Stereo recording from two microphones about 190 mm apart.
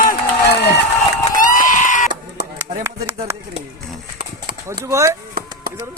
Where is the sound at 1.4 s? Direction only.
45° left (ahead or behind).